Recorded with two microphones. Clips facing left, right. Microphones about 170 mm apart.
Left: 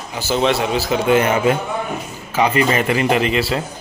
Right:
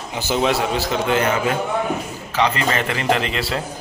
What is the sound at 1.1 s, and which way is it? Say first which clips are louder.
A man's voice: left 5 dB; 20° left (ahead or behind).